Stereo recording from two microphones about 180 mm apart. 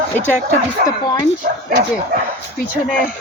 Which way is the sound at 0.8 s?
50° right (ahead or behind).